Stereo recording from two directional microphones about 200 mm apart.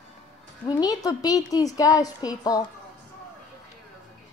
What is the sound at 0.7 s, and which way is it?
A woman's voice, 20° left (ahead or behind).